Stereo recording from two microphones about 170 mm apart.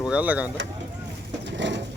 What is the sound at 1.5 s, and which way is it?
Bird, 90° right.